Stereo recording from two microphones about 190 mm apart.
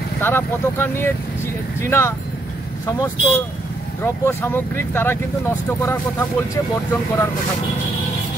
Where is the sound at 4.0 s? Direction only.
10° left (ahead or behind).